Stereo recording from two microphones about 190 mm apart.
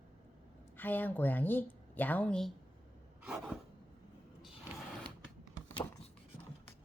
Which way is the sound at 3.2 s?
5° right (ahead or behind).